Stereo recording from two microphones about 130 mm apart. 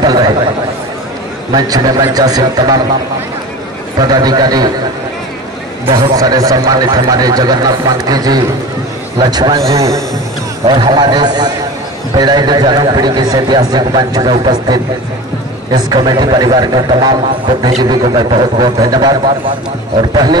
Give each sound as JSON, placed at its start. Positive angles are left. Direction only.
{"t": 0.0, "sound": "a man's voice", "side_deg": -30}
{"t": 1.5, "sound": "speech", "side_deg": -30}
{"t": 4.0, "sound": "a man's voice", "side_deg": -30}
{"t": 6.1, "sound": "speech", "side_deg": -25}
{"t": 10.7, "sound": "a man's voice", "side_deg": -35}